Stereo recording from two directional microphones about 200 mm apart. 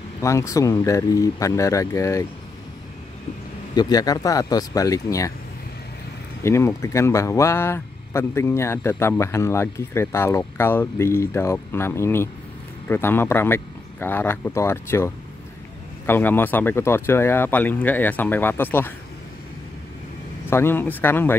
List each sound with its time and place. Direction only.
0.2 s speech: 15° left (ahead or behind)
3.7 s speech: 20° left (ahead or behind)
6.4 s speech: 15° left (ahead or behind)
20.4 s speech: 10° left (ahead or behind)